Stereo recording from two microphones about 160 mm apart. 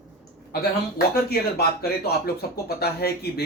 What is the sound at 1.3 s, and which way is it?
Speech, 75° left (ahead or behind).